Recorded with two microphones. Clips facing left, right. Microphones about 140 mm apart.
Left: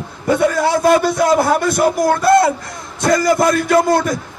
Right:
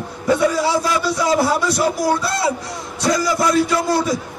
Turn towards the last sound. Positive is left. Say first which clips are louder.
# left 5 dB
turn(degrees=50)  # may be behind; listen again after turning